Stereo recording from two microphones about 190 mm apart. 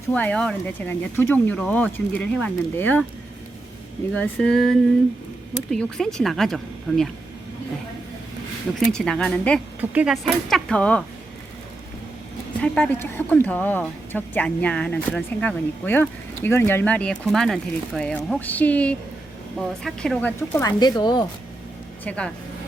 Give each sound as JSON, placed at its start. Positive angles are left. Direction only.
{"t": 0.1, "sound": "speech", "side_deg": 5}
{"t": 4.1, "sound": "a woman's voice", "side_deg": 5}
{"t": 8.8, "sound": "a woman's voice", "side_deg": 5}
{"t": 9.9, "sound": "a woman's voice", "side_deg": -5}
{"t": 12.5, "sound": "speech", "side_deg": 5}
{"t": 22.0, "sound": "a woman's voice", "side_deg": 5}